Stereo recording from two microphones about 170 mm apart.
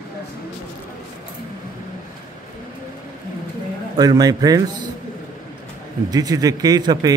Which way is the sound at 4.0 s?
20° right (ahead or behind).